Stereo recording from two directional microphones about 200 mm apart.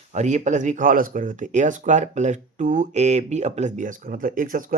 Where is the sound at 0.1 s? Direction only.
35° right (ahead or behind).